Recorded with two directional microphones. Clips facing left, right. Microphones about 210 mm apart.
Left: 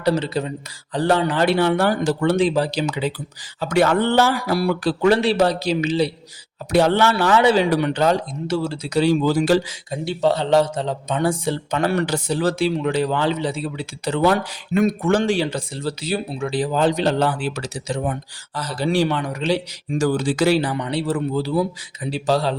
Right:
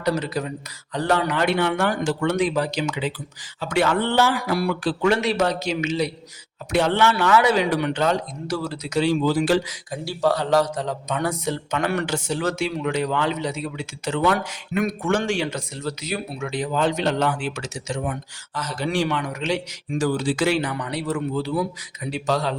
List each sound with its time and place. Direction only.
0.0 s speech: 30° left (ahead or behind)
9.6 s speech: 25° left (ahead or behind)